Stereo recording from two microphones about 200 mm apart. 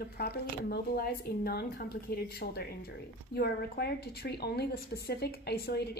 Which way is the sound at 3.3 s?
55° left (ahead or behind).